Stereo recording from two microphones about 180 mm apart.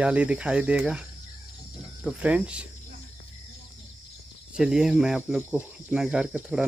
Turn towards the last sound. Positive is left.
turn(degrees=-5)  # may be behind; listen again after turning